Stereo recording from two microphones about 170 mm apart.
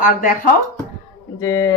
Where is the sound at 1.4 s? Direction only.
20° left (ahead or behind).